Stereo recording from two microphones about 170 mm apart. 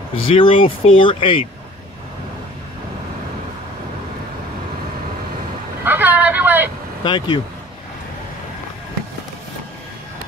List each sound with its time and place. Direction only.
0.1 s speech: 30° left (ahead or behind)
5.9 s vehicle: 10° right (ahead or behind)
7.0 s speech: 25° left (ahead or behind)